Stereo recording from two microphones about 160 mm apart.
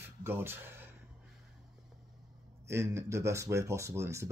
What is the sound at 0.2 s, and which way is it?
Speech, 15° right (ahead or behind).